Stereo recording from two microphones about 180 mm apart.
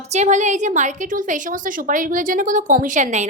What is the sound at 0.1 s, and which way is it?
A woman's voice, 40° right (ahead or behind).